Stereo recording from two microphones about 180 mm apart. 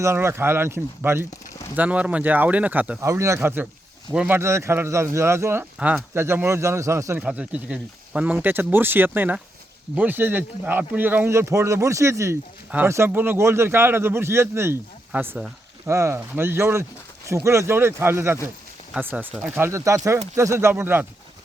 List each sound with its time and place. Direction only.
0.0 s speech: 15° right (ahead or behind)